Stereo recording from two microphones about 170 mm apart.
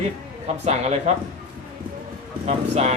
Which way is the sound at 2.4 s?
40° right (ahead or behind).